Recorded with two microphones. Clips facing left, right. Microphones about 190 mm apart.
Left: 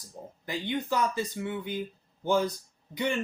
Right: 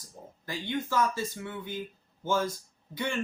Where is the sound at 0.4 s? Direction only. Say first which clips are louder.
Left 1 dB; 20° left (ahead or behind).